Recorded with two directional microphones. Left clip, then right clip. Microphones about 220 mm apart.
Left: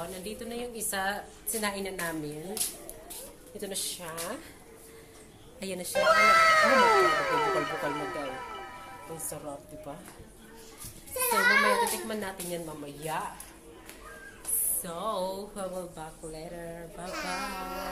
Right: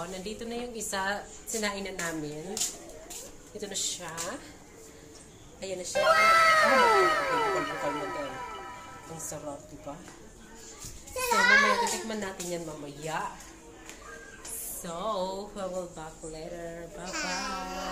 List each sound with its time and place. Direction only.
0.0 s a woman's voice: 5° right (ahead or behind)
3.6 s a child's voice: 15° left (ahead or behind)
5.6 s speech: 35° left (ahead or behind)
5.9 s cat: centre (ahead or behind)
11.2 s a child's voice: 5° left (ahead or behind)
14.8 s a woman's voice: 5° left (ahead or behind)
17.0 s music: 5° right (ahead or behind)